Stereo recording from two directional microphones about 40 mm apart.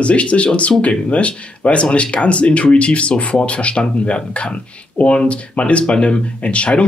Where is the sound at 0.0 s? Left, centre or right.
Left.